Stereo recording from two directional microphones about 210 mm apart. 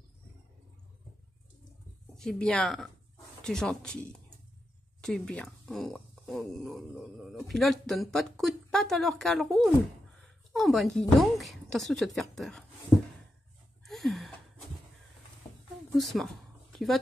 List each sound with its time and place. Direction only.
2.1 s speech: 5° left (ahead or behind)
13.8 s gasp: centre (ahead or behind)
15.5 s a sound: 20° left (ahead or behind)
15.9 s speech: centre (ahead or behind)